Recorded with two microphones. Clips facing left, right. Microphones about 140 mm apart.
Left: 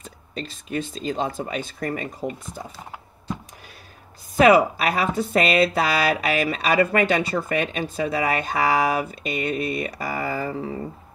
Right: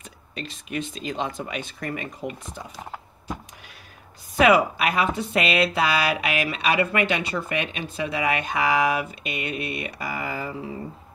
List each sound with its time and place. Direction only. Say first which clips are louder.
0.0 s speech: left 3 dB; 35° left (ahead or behind)
4.4 s speech: left 3 dB; 35° left (ahead or behind)